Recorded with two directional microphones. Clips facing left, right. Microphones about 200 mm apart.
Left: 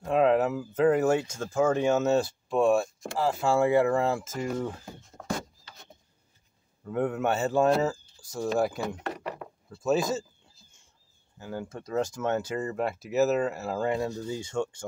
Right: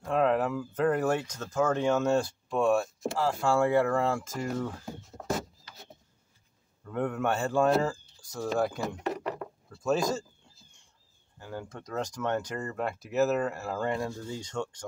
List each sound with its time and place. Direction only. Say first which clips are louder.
0.1 s speech: left 3 dB; 10° left (ahead or behind)
3.4 s speech: left 2 dB; 20° left (ahead or behind)
4.0 s a man's voice: left 1 dB; 5° left (ahead or behind)
4.4 s speech: left 2 dB; 20° left (ahead or behind)
6.8 s a man's voice: left 2 dB; 10° left (ahead or behind)
8.5 s chop: left 2 dB; 5° left (ahead or behind)
11.3 s speech: left 3 dB; 5° left (ahead or behind)
13.9 s speech: left 3 dB; 20° left (ahead or behind)
14.3 s speech: left 4 dB; 10° left (ahead or behind)